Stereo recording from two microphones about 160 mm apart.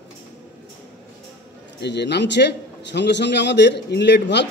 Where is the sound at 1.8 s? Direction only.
90° left.